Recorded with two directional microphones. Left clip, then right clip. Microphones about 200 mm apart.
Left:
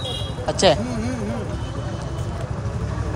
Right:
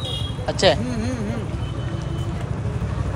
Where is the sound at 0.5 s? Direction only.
20° left (ahead or behind).